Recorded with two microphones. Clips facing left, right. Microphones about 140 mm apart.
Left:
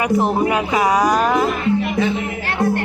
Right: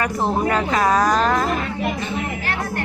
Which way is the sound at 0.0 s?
15° left (ahead or behind).